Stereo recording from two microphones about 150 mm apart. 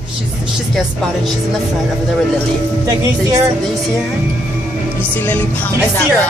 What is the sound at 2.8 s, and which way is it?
Speech, 20° right (ahead or behind).